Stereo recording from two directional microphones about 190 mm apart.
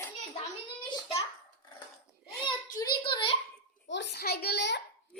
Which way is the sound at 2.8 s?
25° left (ahead or behind).